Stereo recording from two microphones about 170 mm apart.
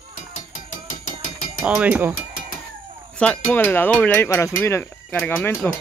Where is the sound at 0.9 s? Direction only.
50° left (ahead or behind).